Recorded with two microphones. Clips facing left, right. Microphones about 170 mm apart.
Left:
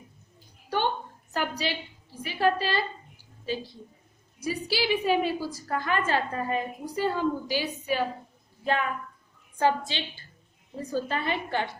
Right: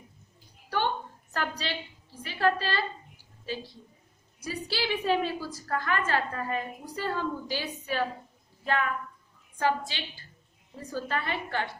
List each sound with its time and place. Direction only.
1.3 s a sound: 10° left (ahead or behind)
2.2 s a woman's voice: 15° left (ahead or behind)
4.4 s a woman's voice: 10° left (ahead or behind)